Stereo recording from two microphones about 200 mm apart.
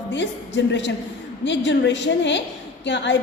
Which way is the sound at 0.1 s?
65° left (ahead or behind).